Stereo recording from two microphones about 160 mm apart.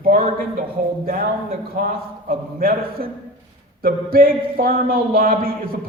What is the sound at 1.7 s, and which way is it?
Speech, 65° right (ahead or behind).